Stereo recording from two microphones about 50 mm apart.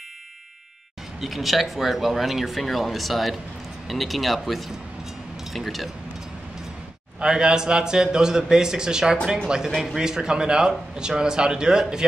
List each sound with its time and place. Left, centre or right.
1.2 s speech: centre
7.2 s a man's voice: centre